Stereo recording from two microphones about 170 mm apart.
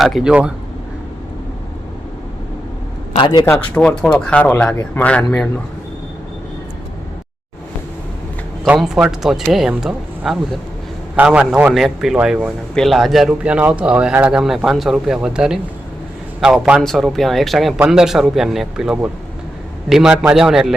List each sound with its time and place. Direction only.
0.0 s a man's voice: centre (ahead or behind)
3.2 s a man's voice: 25° left (ahead or behind)
3.4 s speech: 10° left (ahead or behind)
8.6 s a man's voice: 5° right (ahead or behind)